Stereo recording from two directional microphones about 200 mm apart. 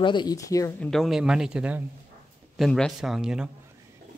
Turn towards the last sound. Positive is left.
turn(degrees=-5)  # may be behind; listen again after turning